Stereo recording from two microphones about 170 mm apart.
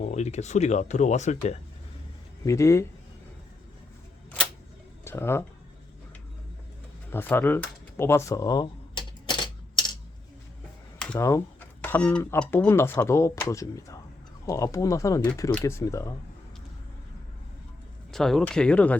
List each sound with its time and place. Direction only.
0.0 s speech: 40° left (ahead or behind)
2.4 s speech: 20° left (ahead or behind)
5.0 s speech: 15° left (ahead or behind)
7.1 s a sound: 15° left (ahead or behind)
11.2 s speech: 15° left (ahead or behind)
18.1 s speech: centre (ahead or behind)